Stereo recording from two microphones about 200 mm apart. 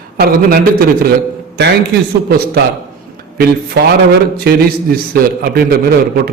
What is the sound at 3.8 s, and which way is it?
A man's voice, 50° right (ahead or behind).